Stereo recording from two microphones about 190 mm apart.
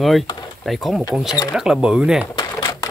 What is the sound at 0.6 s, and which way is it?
Speech, centre (ahead or behind).